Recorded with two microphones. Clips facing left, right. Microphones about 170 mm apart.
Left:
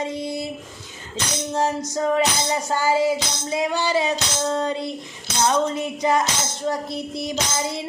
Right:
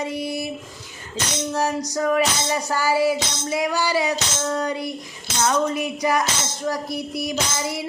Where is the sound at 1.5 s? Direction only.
25° left (ahead or behind).